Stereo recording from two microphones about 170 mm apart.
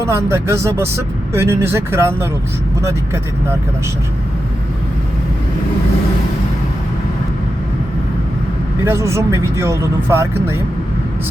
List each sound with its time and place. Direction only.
0.0 s speech: 15° right (ahead or behind)
8.8 s speech: 15° right (ahead or behind)